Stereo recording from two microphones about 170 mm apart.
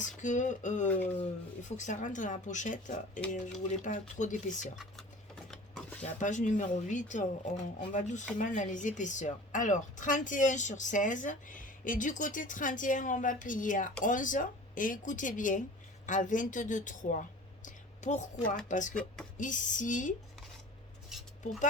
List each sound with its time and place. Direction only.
0.0 s speech: 45° left (ahead or behind)
4.8 s sewing machine: centre (ahead or behind)
6.0 s speech: 45° left (ahead or behind)
17.7 s a sound: 45° left (ahead or behind)
18.7 s speech: 50° left (ahead or behind)
21.1 s cutlery: 5° right (ahead or behind)